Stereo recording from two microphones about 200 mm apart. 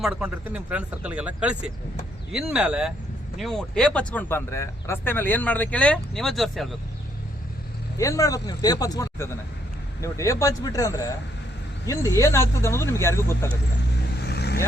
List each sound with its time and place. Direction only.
0.0 s speech: 5° right (ahead or behind)
7.9 s speech: 15° left (ahead or behind)
13.9 s vehicle: 55° left (ahead or behind)